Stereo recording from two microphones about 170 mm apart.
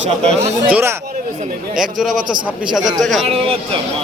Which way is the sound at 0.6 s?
10° right (ahead or behind).